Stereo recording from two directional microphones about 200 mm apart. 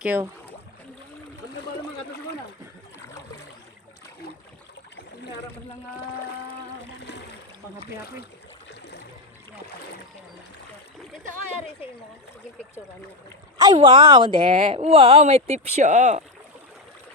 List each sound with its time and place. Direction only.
0.0 s speech: 10° right (ahead or behind)
13.7 s speech: 25° right (ahead or behind)